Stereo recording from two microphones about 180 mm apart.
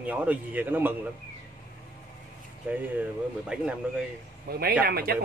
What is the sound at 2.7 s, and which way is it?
A man's voice, 10° right (ahead or behind).